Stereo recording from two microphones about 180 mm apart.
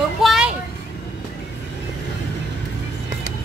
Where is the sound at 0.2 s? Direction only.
Centre (ahead or behind).